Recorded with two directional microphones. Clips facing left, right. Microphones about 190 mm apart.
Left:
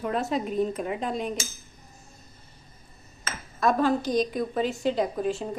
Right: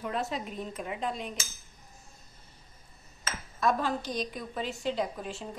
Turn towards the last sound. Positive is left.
turn(degrees=45)  # may be behind; listen again after turning